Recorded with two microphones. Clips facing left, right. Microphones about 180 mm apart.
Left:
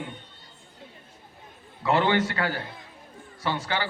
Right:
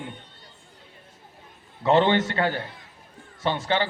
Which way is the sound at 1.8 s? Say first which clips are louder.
Right 3 dB; 25° right (ahead or behind).